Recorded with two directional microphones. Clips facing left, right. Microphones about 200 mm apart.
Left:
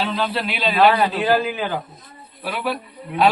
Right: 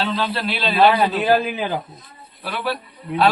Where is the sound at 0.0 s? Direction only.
10° left (ahead or behind).